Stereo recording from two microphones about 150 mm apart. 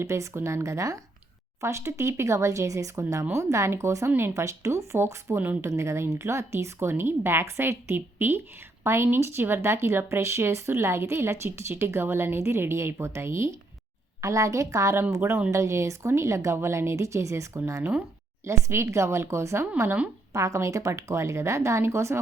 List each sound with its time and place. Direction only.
0.0 s speech: 20° right (ahead or behind)